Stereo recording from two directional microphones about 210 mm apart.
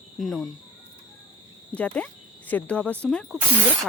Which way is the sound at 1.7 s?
5° left (ahead or behind).